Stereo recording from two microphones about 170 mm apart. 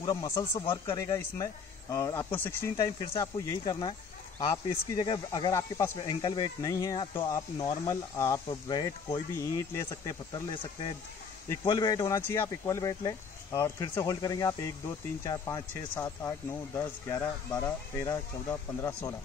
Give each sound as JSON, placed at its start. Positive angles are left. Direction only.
{"t": 0.0, "sound": "speech", "side_deg": 20}
{"t": 4.9, "sound": "speech", "side_deg": 25}
{"t": 5.9, "sound": "speech", "side_deg": 30}